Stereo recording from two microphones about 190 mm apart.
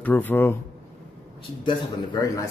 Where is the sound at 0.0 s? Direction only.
10° left (ahead or behind).